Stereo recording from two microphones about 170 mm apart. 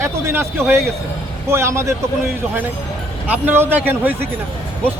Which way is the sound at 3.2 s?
10° right (ahead or behind).